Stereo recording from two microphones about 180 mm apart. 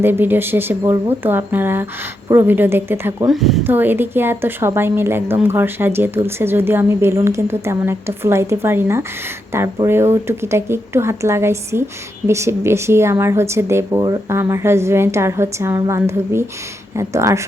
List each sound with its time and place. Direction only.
0.0 s a woman's voice: 10° right (ahead or behind)
3.2 s a woman's voice: centre (ahead or behind)